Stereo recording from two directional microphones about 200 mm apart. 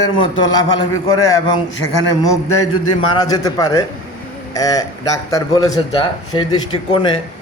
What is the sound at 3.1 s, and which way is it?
A man's voice, 20° left (ahead or behind).